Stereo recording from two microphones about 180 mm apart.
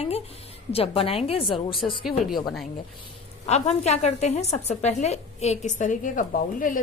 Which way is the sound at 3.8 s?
40° left (ahead or behind).